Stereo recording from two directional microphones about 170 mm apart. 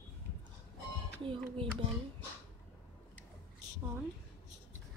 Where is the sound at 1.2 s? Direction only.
30° right (ahead or behind).